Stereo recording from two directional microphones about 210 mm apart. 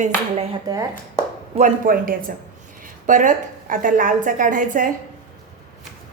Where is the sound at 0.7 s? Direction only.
20° right (ahead or behind).